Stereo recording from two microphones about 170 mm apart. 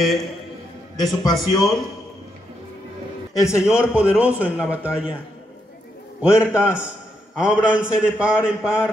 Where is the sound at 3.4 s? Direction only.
15° left (ahead or behind).